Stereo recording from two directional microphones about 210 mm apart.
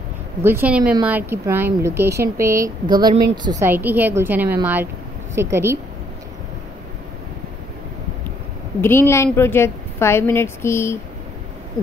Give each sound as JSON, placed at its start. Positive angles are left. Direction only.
{"t": 0.4, "sound": "speech", "side_deg": -10}
{"t": 8.8, "sound": "a woman's voice", "side_deg": 10}